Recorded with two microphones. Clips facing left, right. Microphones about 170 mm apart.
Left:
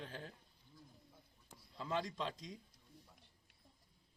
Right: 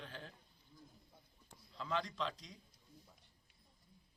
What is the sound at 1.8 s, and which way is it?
Speech, 45° left (ahead or behind).